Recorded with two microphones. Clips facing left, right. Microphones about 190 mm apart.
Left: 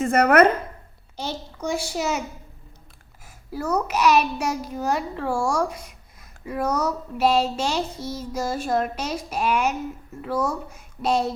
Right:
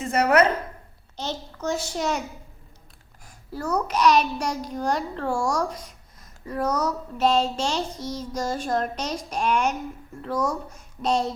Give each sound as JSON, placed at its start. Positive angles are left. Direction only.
{"t": 0.0, "sound": "a woman's voice", "side_deg": 55}
{"t": 1.1, "sound": "a child's voice", "side_deg": 10}
{"t": 3.5, "sound": "a child's voice", "side_deg": 10}